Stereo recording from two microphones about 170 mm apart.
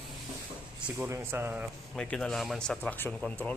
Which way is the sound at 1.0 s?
15° right (ahead or behind).